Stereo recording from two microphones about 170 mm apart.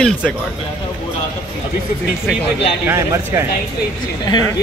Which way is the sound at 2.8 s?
15° right (ahead or behind).